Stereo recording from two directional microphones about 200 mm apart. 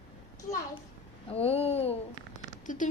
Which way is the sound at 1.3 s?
30° left (ahead or behind).